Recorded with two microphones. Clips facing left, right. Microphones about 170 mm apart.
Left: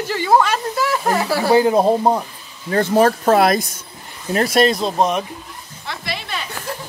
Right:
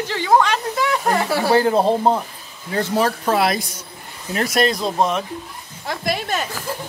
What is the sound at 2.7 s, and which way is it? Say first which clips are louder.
Speech: left 5 dB; 50° left (ahead or behind).